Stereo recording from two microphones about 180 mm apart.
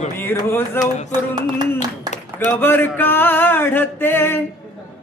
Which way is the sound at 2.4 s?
10° left (ahead or behind).